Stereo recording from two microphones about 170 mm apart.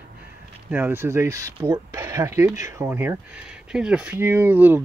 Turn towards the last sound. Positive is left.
turn(degrees=-10)  # may be behind; listen again after turning